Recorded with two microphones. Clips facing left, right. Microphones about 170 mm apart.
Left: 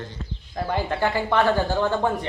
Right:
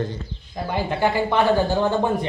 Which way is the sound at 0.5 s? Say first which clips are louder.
Even; 15° right (ahead or behind).